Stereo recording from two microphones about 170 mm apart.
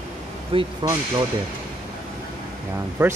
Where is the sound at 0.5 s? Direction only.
30° right (ahead or behind).